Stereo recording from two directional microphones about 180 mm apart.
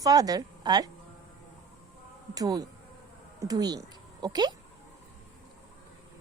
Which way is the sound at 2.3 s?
20° right (ahead or behind).